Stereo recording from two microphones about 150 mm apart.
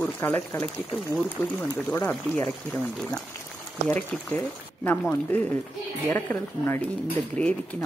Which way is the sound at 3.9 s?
10° left (ahead or behind).